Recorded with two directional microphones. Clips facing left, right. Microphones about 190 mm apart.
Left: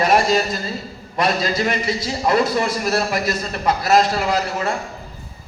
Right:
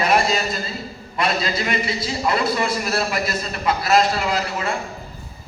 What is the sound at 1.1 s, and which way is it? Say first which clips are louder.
A man's voice: left 3 dB; 45° left (ahead or behind).